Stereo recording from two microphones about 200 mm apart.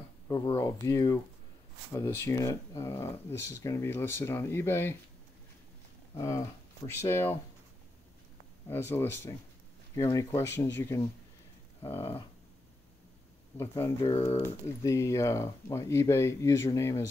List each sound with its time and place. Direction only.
0.3 s speech: 20° left (ahead or behind)
6.1 s speech: 15° left (ahead or behind)
8.6 s speech: 10° left (ahead or behind)
13.6 s speech: 10° left (ahead or behind)